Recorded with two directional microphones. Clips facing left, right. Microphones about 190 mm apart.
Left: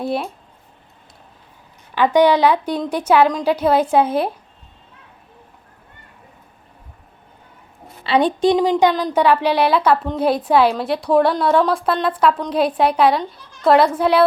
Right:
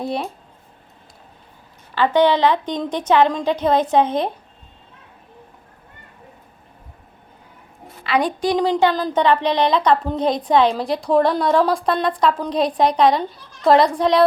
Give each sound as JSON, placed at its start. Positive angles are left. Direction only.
{"t": 0.0, "sound": "speech", "side_deg": 0}
{"t": 2.0, "sound": "a woman's voice", "side_deg": 10}
{"t": 8.0, "sound": "a woman's voice", "side_deg": 30}
{"t": 8.8, "sound": "a woman's voice", "side_deg": 15}